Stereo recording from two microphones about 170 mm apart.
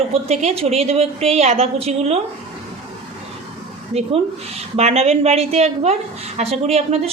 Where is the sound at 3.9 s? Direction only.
35° right (ahead or behind).